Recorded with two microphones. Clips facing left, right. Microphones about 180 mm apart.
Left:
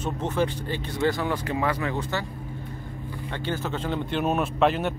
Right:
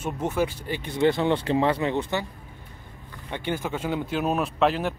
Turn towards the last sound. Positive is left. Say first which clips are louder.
# left 1 dB
turn(degrees=0)  # may be behind; listen again after turning